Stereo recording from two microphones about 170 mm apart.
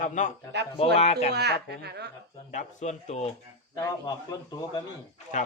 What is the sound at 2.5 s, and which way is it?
Speech, 45° left (ahead or behind).